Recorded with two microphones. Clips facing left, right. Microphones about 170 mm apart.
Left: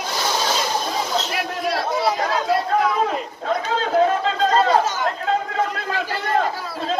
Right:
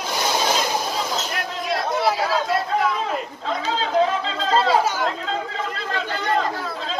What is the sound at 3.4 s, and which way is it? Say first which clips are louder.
Chatter: left 3 dB; 50° left (ahead or behind).